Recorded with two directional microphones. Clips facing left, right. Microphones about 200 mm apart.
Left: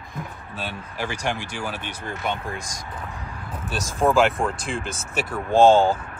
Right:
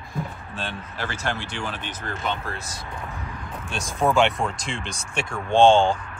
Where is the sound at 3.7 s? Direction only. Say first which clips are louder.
Left 2 dB; centre (ahead or behind).